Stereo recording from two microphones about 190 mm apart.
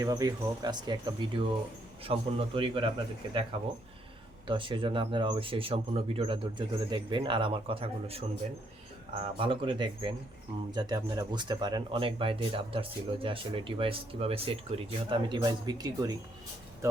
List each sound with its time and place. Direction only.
0.0 s speech: 20° right (ahead or behind)
9.2 s speech: 30° right (ahead or behind)